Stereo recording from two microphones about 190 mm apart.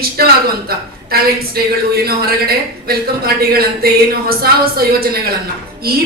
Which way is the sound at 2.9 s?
55° right (ahead or behind).